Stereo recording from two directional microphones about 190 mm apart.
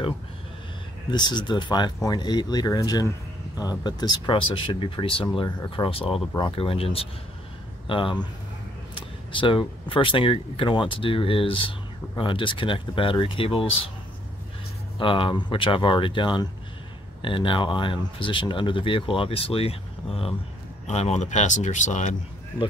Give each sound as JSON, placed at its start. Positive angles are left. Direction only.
{"t": 1.1, "sound": "speech", "side_deg": 25}
{"t": 15.0, "sound": "speech", "side_deg": 25}